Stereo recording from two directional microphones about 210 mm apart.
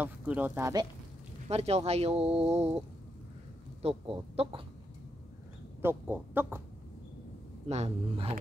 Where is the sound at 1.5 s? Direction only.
30° right (ahead or behind).